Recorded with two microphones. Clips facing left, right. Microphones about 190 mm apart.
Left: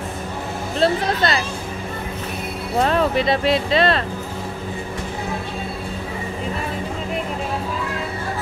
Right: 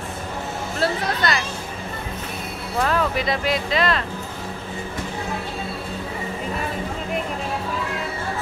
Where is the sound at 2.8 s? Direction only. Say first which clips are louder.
Left 4 dB; 25° left (ahead or behind).